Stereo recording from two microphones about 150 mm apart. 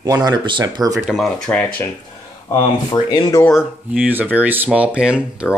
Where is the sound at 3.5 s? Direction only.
5° right (ahead or behind).